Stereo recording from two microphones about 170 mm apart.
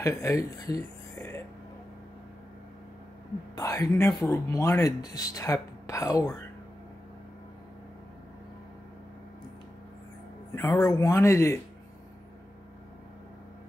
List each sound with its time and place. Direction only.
0.0 s speech: 15° left (ahead or behind)
3.5 s speech: 20° left (ahead or behind)
10.5 s speech: 20° left (ahead or behind)